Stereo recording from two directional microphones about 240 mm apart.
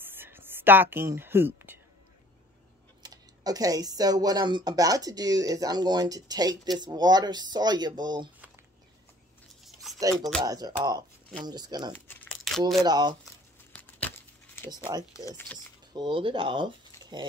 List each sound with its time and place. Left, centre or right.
0.0 s a sound: centre
3.0 s speech: centre
9.7 s a sound: centre
10.4 s speech: centre
12.4 s speech: centre
12.8 s speech: centre
13.7 s a sound: centre
14.7 s speech: centre
15.1 s speech: centre
15.9 s speech: centre